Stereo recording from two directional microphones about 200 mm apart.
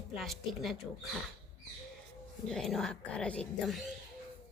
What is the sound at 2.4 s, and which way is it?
Speech, centre (ahead or behind).